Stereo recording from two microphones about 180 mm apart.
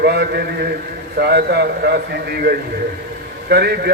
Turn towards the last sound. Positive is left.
turn(degrees=-65)  # may be behind; listen again after turning